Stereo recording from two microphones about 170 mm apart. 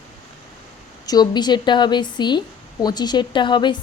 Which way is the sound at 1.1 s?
25° left (ahead or behind).